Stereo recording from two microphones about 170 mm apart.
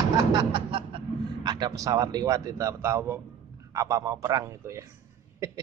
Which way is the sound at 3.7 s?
20° right (ahead or behind).